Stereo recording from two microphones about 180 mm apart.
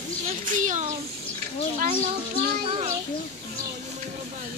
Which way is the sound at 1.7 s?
45° right (ahead or behind).